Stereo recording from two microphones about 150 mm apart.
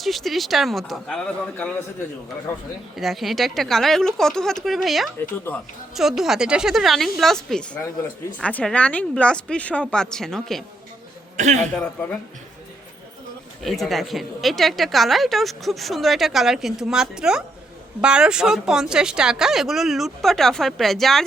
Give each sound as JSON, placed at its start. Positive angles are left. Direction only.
{"t": 0.0, "sound": "a woman's voice", "side_deg": 0}
{"t": 1.6, "sound": "a woman's voice", "side_deg": 10}
{"t": 2.9, "sound": "a woman's voice", "side_deg": 0}
{"t": 11.4, "sound": "a man's voice", "side_deg": -55}
{"t": 11.7, "sound": "a woman's voice", "side_deg": 10}
{"t": 13.6, "sound": "a woman's voice", "side_deg": 0}